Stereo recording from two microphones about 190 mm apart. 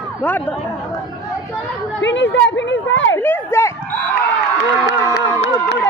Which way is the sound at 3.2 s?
10° left (ahead or behind).